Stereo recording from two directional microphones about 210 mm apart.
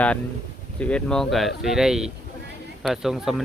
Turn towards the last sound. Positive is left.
turn(degrees=0)  # may be behind; listen again after turning